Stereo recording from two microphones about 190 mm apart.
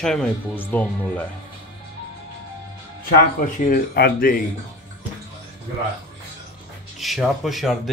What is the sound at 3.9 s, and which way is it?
Speech, 55° left (ahead or behind).